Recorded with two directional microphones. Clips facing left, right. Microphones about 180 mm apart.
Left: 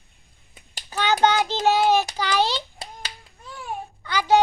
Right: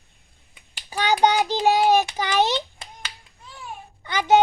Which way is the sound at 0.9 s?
10° right (ahead or behind).